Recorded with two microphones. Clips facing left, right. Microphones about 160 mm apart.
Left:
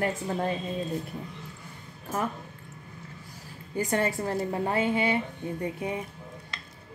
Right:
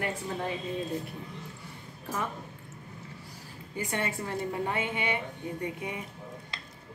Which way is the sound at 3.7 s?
40° left (ahead or behind).